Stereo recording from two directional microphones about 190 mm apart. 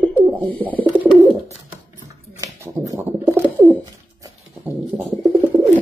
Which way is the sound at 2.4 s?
15° right (ahead or behind).